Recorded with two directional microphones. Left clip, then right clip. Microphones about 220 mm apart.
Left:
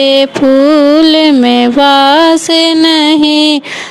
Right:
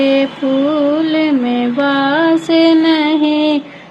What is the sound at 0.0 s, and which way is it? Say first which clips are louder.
Mantra: left 6 dB; 50° left (ahead or behind).